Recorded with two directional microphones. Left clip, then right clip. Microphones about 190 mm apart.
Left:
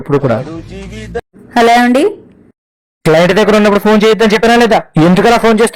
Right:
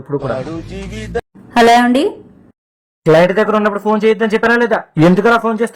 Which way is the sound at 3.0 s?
35° left (ahead or behind).